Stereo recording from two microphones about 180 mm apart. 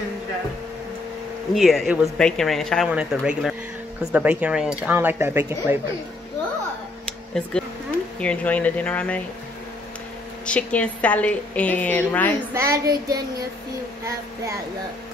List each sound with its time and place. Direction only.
1.5 s speech: centre (ahead or behind)
7.1 s a sound: 5° left (ahead or behind)
8.2 s a woman's voice: 5° left (ahead or behind)
10.4 s a woman's voice: 5° left (ahead or behind)
12.5 s speech: 15° right (ahead or behind)